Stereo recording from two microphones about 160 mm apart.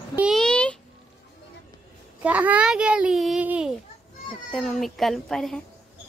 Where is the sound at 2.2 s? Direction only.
10° right (ahead or behind).